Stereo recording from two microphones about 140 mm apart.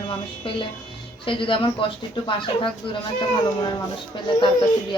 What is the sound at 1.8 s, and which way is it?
Speech, 40° left (ahead or behind).